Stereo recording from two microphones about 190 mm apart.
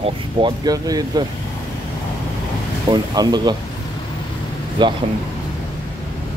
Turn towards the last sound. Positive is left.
turn(degrees=-25)  # may be behind; listen again after turning